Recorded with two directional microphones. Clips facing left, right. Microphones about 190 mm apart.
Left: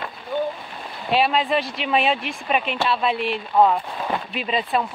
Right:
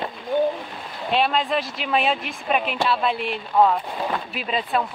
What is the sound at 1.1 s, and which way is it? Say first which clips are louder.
Speech: left 2 dB; 5° left (ahead or behind).